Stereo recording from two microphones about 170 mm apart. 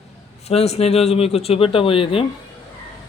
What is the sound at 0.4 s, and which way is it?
Speech, 40° left (ahead or behind).